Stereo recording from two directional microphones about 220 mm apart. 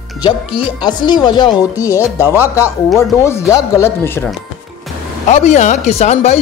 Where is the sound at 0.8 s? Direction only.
20° left (ahead or behind).